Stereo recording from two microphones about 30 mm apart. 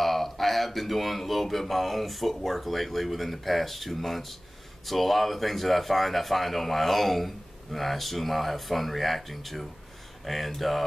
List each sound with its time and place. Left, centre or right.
0.0 s speech: centre